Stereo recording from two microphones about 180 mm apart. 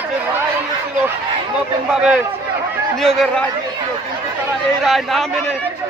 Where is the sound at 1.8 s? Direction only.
5° right (ahead or behind).